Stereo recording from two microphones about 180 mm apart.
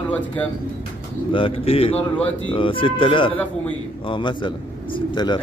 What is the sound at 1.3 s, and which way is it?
A man's voice, 30° left (ahead or behind).